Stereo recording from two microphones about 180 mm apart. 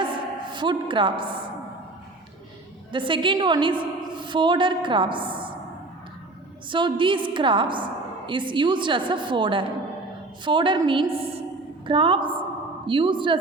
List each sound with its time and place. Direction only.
0.0 s a sound: 25° right (ahead or behind)
2.9 s a woman's voice: 25° right (ahead or behind)
6.7 s a woman's voice: 25° right (ahead or behind)